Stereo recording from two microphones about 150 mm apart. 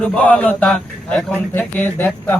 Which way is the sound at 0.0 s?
10° left (ahead or behind).